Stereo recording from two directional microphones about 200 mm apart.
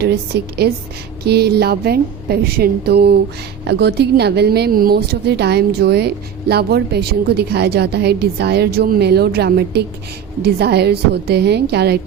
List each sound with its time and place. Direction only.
0.3 s a woman's voice: 55° right (ahead or behind)